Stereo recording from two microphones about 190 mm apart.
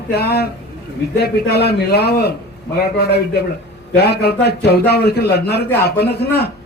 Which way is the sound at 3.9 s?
55° left (ahead or behind).